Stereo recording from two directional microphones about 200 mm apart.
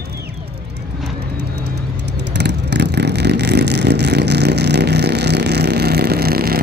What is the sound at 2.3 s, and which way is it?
Vehicle, 60° right (ahead or behind).